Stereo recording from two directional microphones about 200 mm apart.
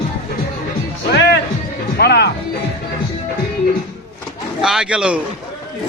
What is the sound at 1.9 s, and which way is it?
Music, 55° left (ahead or behind).